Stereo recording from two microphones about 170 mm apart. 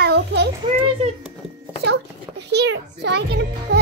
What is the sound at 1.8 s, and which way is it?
Music, 80° right.